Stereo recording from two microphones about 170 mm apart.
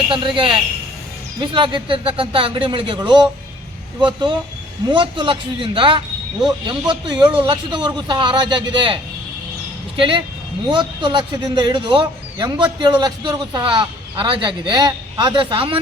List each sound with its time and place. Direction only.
0.1 s a man's voice: 30° right (ahead or behind)
10.0 s a man's voice: 30° right (ahead or behind)